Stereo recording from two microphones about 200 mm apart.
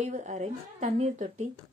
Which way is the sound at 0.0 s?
35° right (ahead or behind).